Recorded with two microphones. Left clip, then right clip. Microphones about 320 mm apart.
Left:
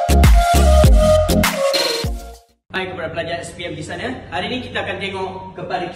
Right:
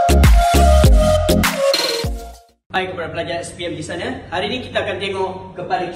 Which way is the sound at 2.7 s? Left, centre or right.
Centre.